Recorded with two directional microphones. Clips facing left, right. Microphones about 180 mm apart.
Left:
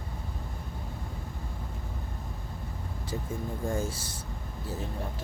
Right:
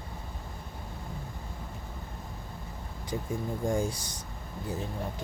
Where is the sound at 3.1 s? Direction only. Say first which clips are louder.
Right 2 dB; 20° right (ahead or behind).